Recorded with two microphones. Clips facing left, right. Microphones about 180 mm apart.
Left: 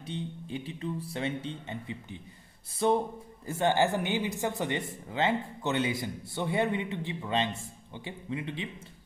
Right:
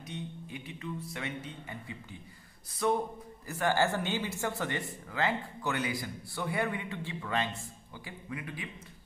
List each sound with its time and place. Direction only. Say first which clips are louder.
0.0 s a man's voice: left 4 dB; 30° left (ahead or behind)